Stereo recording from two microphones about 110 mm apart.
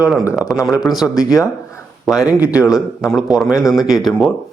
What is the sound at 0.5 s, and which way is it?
Speech, 30° left (ahead or behind).